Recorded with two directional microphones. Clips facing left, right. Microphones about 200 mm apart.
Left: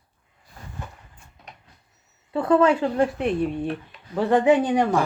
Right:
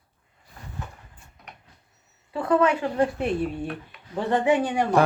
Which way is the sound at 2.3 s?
30° left (ahead or behind).